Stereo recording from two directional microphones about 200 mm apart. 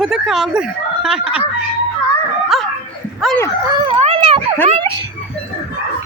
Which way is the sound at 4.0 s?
30° right (ahead or behind).